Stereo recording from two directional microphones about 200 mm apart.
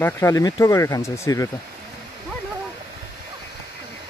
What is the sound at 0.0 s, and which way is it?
Speech, 15° left (ahead or behind).